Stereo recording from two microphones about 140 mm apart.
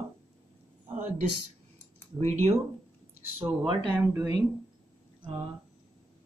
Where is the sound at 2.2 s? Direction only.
50° right (ahead or behind).